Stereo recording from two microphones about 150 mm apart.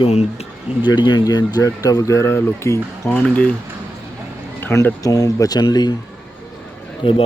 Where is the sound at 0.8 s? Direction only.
30° left (ahead or behind).